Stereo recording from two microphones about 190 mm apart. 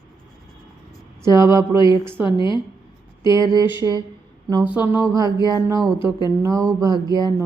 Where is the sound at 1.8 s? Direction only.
25° left (ahead or behind).